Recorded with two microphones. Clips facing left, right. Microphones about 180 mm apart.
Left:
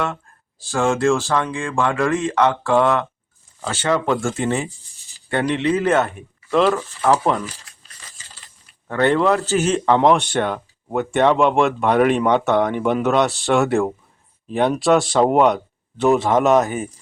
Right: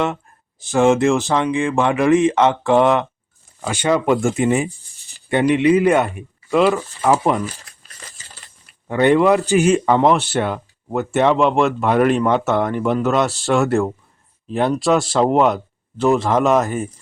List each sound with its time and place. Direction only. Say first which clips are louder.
0.6 s speech: right 4 dB; 20° right (ahead or behind)
8.9 s speech: right 3 dB; 15° right (ahead or behind); by 16.9 s centre (ahead or behind)